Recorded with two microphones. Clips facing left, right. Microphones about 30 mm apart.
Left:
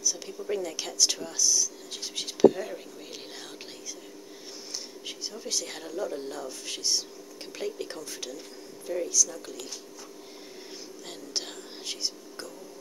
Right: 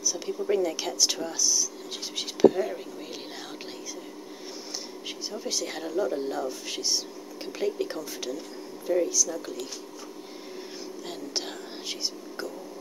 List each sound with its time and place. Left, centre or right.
0.5 s speech: centre
5.0 s speech: centre
11.1 s whispering: centre